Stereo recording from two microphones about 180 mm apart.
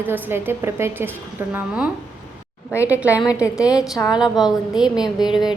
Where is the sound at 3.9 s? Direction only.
15° left (ahead or behind).